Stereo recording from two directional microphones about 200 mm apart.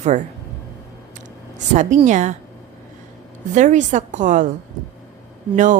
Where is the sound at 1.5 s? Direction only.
35° right (ahead or behind).